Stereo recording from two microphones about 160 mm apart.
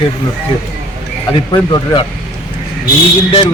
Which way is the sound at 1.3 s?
30° left (ahead or behind).